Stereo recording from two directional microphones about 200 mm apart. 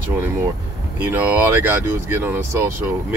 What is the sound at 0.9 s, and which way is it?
Speech, 10° right (ahead or behind).